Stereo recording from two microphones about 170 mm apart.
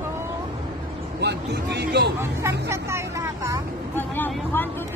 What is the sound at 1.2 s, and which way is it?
Speech, 80° right.